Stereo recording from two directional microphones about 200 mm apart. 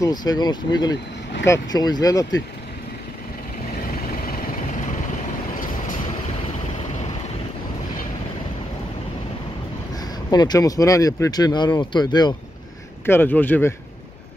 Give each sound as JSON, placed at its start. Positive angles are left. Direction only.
{"t": 0.0, "sound": "speech", "side_deg": 20}
{"t": 10.3, "sound": "speech", "side_deg": 20}
{"t": 13.0, "sound": "speech", "side_deg": 10}